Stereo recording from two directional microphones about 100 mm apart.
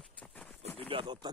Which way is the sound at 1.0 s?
45° right (ahead or behind).